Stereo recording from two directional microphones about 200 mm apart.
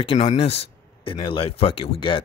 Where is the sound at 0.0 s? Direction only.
30° left (ahead or behind).